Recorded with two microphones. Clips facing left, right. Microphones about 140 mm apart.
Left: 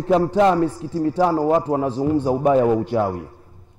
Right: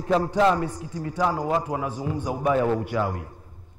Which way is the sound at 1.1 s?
35° left (ahead or behind).